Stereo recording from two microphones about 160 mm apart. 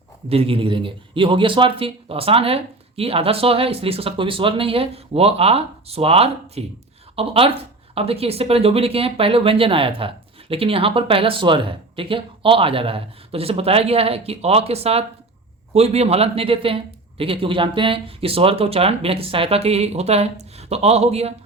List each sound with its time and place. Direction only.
0.3 s speech: 35° right (ahead or behind)